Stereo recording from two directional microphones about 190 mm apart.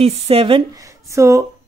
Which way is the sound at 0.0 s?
30° right (ahead or behind).